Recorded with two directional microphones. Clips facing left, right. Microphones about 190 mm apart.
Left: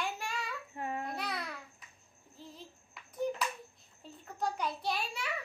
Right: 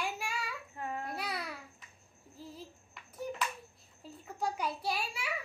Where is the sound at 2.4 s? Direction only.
5° right (ahead or behind).